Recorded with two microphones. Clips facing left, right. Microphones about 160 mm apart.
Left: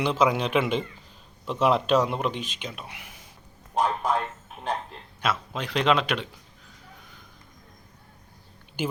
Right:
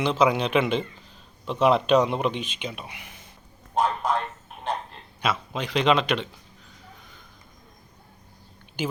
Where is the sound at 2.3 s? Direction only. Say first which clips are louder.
Right 2 dB; 40° left (ahead or behind).